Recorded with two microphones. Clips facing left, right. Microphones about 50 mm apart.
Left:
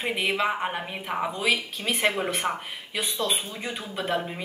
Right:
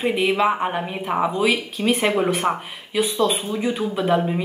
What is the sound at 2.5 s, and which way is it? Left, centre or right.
Speech, right.